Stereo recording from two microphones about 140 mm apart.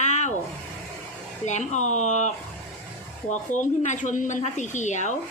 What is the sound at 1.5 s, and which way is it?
Speech, 55° left (ahead or behind).